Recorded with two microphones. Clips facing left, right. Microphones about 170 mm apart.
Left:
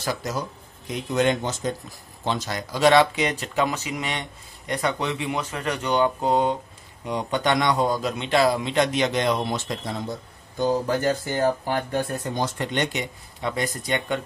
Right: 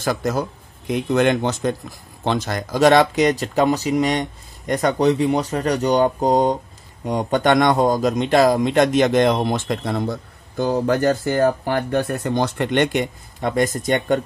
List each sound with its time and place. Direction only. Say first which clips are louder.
0.0 s speech: right 6 dB; 50° right (ahead or behind)
2.2 s speech: right 5 dB; 55° right (ahead or behind)